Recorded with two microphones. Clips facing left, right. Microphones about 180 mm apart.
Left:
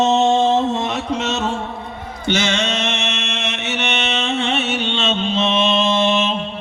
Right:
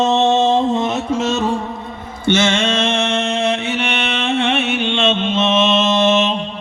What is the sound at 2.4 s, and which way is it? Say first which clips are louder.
Mantra: right 4 dB; 50° right (ahead or behind).